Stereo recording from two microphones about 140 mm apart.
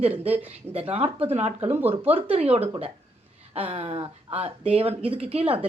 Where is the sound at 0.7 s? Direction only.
45° right (ahead or behind).